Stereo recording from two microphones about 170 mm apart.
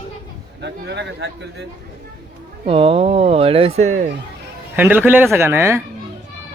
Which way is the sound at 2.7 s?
35° right (ahead or behind).